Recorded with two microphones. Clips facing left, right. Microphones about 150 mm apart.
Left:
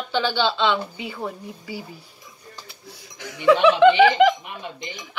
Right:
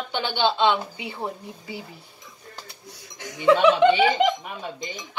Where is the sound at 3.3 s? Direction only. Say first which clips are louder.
Left 1 dB; 20° right (ahead or behind).